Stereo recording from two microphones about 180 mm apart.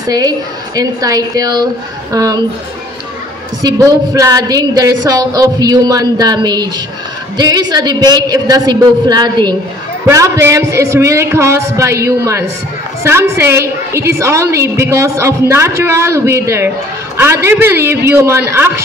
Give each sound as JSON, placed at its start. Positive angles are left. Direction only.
{"t": 0.0, "sound": "a woman's voice", "side_deg": -20}
{"t": 3.6, "sound": "a woman's voice", "side_deg": -20}